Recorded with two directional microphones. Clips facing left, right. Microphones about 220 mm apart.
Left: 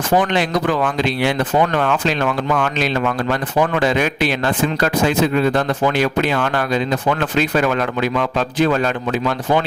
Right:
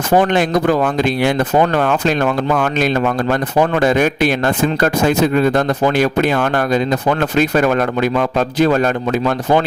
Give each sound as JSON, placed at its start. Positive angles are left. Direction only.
{"t": 0.2, "sound": "speech", "side_deg": -50}